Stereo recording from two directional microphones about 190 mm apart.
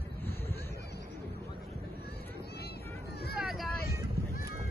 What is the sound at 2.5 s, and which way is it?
Vehicle, 60° left (ahead or behind).